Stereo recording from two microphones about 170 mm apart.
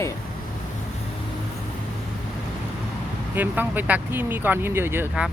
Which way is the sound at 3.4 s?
10° right (ahead or behind).